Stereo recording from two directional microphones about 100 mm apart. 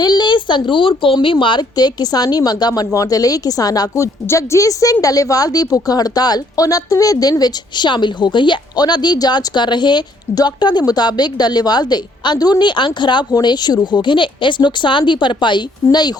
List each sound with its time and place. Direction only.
0.0 s a woman's voice: 45° left (ahead or behind)